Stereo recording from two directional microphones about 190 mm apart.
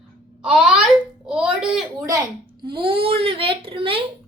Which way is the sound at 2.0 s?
15° right (ahead or behind).